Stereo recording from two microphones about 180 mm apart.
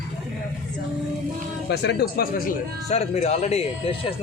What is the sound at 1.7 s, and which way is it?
Speech, 65° left (ahead or behind).